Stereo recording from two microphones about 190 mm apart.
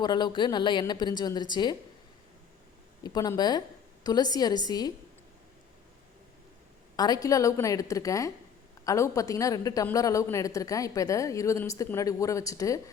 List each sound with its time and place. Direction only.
0.0 s a woman's voice: 25° left (ahead or behind)
3.0 s a woman's voice: 20° left (ahead or behind)
6.9 s a woman's voice: 20° left (ahead or behind)